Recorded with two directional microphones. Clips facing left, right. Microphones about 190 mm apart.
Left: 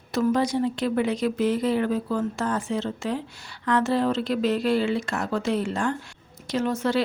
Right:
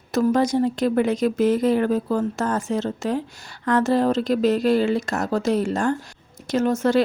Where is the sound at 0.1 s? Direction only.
45° right (ahead or behind).